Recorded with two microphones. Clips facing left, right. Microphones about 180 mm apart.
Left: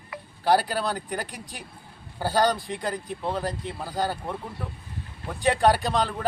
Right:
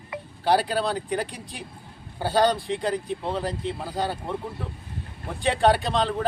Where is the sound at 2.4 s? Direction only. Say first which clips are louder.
Right 2 dB; 25° right (ahead or behind).